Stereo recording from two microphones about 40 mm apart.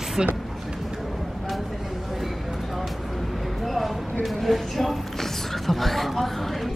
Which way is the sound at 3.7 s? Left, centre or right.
Centre.